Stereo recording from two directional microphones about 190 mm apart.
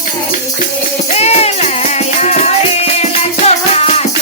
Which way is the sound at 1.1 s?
35° left (ahead or behind).